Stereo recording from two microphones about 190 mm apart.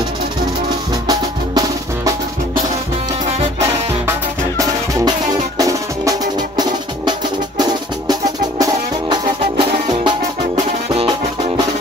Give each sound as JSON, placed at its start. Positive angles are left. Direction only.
{"t": 5.6, "sound": "music", "side_deg": -20}
{"t": 9.1, "sound": "music", "side_deg": -25}